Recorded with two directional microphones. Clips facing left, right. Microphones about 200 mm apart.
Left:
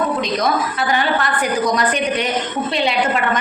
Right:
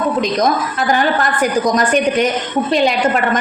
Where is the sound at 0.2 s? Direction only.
45° right (ahead or behind).